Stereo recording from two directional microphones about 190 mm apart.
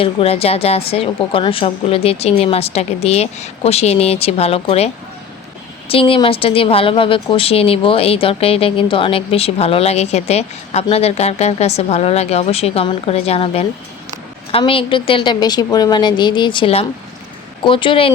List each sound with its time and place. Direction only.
0.0 s a woman's voice: 30° left (ahead or behind)
5.9 s a woman's voice: 30° left (ahead or behind)